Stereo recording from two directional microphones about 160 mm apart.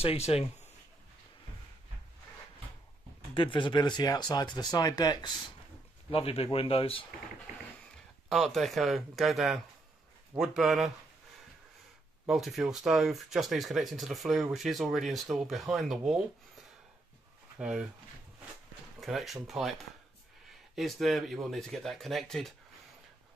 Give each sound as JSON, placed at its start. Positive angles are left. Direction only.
{"t": 0.0, "sound": "speech", "side_deg": 40}
{"t": 3.3, "sound": "speech", "side_deg": 30}
{"t": 6.0, "sound": "speech", "side_deg": 35}
{"t": 8.3, "sound": "speech", "side_deg": 0}
{"t": 12.3, "sound": "speech", "side_deg": 0}
{"t": 17.6, "sound": "speech", "side_deg": -5}
{"t": 18.9, "sound": "speech", "side_deg": 0}
{"t": 20.7, "sound": "speech", "side_deg": 0}